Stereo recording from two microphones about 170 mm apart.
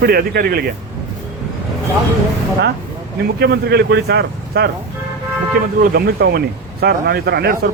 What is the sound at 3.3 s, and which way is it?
Speech, 65° right (ahead or behind).